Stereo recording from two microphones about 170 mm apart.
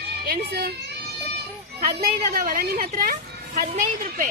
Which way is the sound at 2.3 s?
55° right (ahead or behind).